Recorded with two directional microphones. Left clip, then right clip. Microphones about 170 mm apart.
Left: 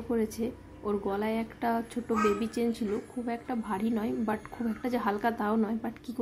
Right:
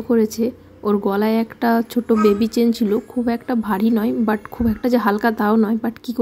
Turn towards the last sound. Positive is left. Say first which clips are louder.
# right 12 dB
turn(degrees=-35)  # may be behind; listen again after turning